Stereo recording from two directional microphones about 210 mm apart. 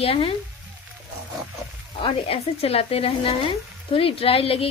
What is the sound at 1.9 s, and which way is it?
Speech, 25° left (ahead or behind).